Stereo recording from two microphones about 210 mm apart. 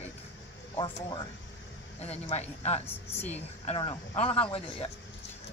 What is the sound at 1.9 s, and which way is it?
Speech, 30° left (ahead or behind).